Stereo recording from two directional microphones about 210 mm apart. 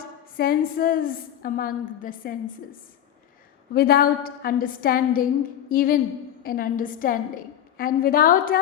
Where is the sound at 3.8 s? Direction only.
45° left (ahead or behind).